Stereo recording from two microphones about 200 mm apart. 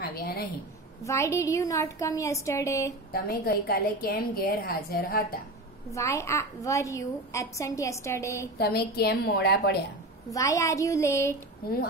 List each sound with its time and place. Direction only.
0.0 s a sound: 50° left (ahead or behind)
1.0 s a woman's voice: 15° left (ahead or behind)
3.1 s a woman's voice: 50° left (ahead or behind)
5.9 s a woman's voice: 15° left (ahead or behind)
8.5 s a woman's voice: 55° left (ahead or behind)
10.3 s a woman's voice: 15° left (ahead or behind)